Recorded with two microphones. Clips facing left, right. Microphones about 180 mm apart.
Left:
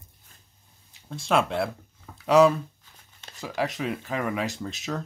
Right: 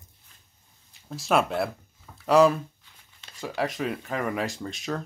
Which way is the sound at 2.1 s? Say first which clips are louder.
Left 1 dB; centre (ahead or behind).